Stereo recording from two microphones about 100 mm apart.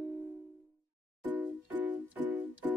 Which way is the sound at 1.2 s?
15° right (ahead or behind).